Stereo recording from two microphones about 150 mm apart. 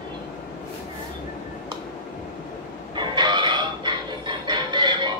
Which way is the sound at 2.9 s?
30° right (ahead or behind).